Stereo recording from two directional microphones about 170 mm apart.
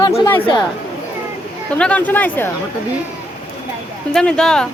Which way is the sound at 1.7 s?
5° left (ahead or behind).